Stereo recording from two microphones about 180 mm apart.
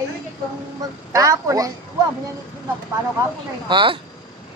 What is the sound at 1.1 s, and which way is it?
Speech, 15° right (ahead or behind).